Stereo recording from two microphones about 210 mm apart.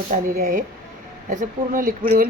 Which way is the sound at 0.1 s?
35° right (ahead or behind).